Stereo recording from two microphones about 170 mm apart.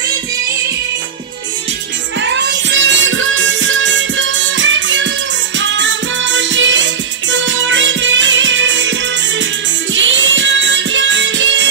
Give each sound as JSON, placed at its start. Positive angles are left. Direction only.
{"t": 2.1, "sound": "music", "side_deg": -90}
{"t": 9.9, "sound": "music", "side_deg": -90}